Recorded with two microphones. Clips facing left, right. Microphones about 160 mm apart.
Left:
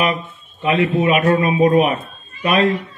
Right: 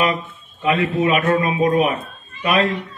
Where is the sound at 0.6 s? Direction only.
25° left (ahead or behind).